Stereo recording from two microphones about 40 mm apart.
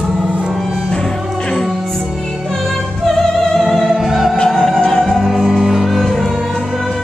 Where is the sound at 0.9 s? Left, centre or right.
Centre.